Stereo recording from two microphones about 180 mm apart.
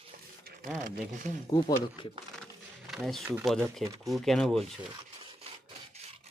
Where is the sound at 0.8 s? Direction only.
45° right (ahead or behind).